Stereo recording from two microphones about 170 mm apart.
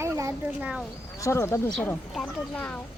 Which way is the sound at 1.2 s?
15° left (ahead or behind).